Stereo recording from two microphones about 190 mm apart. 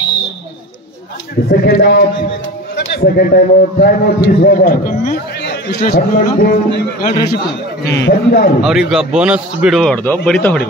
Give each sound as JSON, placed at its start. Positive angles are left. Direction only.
{"t": 1.5, "sound": "a man's voice", "side_deg": 55}
{"t": 8.6, "sound": "speech", "side_deg": -5}